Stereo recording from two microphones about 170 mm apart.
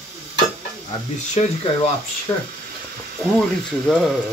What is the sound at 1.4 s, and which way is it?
Speech, 40° left (ahead or behind).